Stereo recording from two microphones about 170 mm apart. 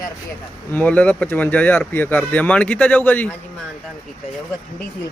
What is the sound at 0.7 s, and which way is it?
Speech, 10° left (ahead or behind).